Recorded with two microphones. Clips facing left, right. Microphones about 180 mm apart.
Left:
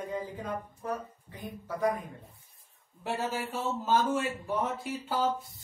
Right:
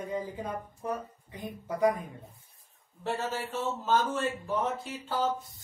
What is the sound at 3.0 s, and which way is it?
A man's voice, 10° left (ahead or behind).